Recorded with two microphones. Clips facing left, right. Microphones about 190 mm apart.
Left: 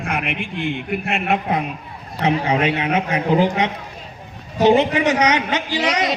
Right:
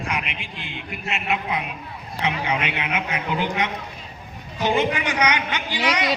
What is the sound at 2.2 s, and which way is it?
A man's voice, 40° left (ahead or behind).